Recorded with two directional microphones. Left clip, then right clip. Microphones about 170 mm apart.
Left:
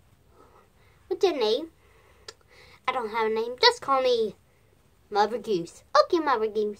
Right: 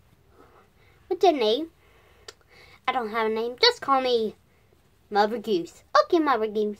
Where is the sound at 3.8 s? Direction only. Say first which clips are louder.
Right 1 dB; 25° right (ahead or behind).